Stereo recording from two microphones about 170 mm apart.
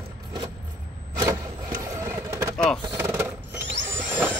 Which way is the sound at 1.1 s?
20° right (ahead or behind).